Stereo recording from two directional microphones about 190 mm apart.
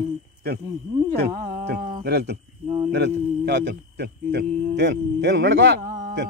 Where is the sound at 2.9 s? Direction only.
65° right (ahead or behind).